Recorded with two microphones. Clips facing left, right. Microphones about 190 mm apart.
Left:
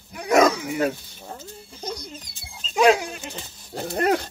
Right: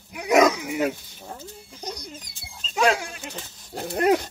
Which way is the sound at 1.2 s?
Centre (ahead or behind).